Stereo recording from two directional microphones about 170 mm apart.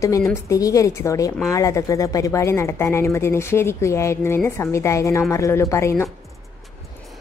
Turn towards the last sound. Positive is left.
turn(degrees=15)  # may be behind; listen again after turning